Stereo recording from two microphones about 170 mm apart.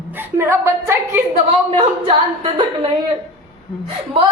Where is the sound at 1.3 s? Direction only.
35° right (ahead or behind).